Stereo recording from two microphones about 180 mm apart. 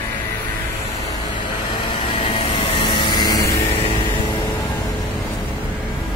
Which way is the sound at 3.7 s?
35° left (ahead or behind).